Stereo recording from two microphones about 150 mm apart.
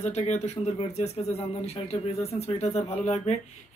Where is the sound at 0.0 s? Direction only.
50° left (ahead or behind).